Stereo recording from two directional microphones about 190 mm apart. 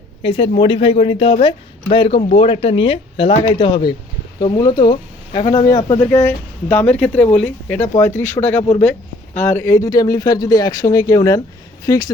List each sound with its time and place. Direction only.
0.2 s speech: 30° left (ahead or behind)